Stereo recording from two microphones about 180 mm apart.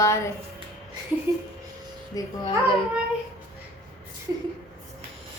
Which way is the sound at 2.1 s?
20° left (ahead or behind).